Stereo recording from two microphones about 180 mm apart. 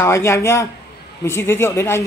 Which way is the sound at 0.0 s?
15° left (ahead or behind).